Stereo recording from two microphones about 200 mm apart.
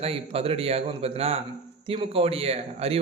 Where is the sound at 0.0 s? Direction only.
30° right (ahead or behind).